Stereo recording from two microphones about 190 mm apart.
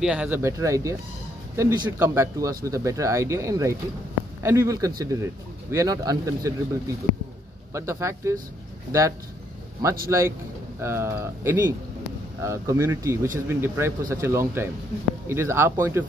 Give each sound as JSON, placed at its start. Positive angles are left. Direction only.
{"t": 0.0, "sound": "speech", "side_deg": -5}
{"t": 9.8, "sound": "speech", "side_deg": -15}